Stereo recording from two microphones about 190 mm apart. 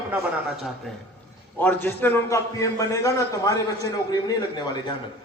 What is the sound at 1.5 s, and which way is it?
A man's voice, 10° left (ahead or behind).